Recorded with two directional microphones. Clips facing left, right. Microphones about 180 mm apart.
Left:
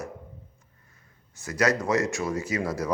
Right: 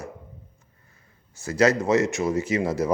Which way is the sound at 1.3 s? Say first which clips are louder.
Right 5 dB; 25° right (ahead or behind).